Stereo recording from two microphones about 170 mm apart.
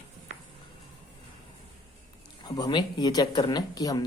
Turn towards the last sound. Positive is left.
turn(degrees=20)  # may be behind; listen again after turning